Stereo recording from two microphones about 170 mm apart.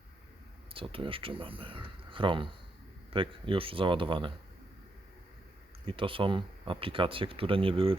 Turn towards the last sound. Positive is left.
turn(degrees=-35)  # may be behind; listen again after turning